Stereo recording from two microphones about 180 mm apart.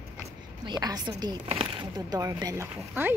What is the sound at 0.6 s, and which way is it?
A woman's voice, 25° right (ahead or behind).